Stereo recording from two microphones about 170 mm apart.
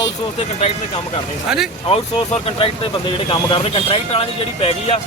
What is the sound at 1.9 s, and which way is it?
Speech, 35° left (ahead or behind).